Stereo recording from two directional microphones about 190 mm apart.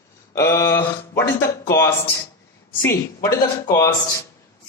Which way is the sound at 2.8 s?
15° left (ahead or behind).